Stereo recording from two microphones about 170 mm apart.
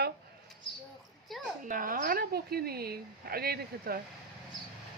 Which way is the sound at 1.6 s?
50° right (ahead or behind).